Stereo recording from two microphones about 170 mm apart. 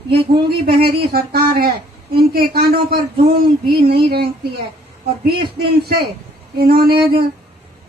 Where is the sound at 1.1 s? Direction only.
65° right (ahead or behind).